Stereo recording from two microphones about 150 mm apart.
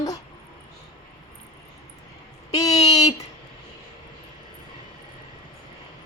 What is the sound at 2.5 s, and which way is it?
Speech, 25° left (ahead or behind).